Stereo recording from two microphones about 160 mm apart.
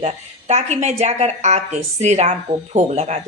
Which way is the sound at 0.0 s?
45° right (ahead or behind).